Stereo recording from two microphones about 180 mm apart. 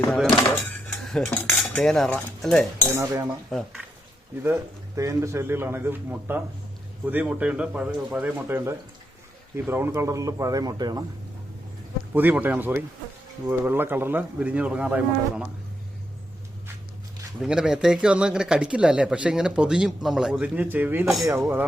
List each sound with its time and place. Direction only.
0.1 s speech: 5° left (ahead or behind)
1.0 s cutlery: centre (ahead or behind)
1.5 s speech: 5° left (ahead or behind)
2.9 s speech: 15° right (ahead or behind)
3.5 s speech: centre (ahead or behind)
4.9 s speech: 15° right (ahead or behind)
12.1 s speech: 10° right (ahead or behind)
17.4 s speech: 5° right (ahead or behind)